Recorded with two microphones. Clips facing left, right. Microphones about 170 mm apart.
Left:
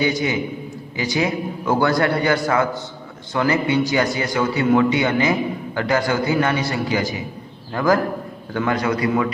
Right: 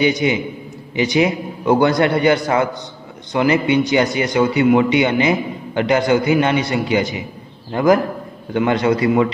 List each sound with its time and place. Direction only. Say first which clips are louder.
0.0 s a man's voice: right 4 dB; 20° right (ahead or behind)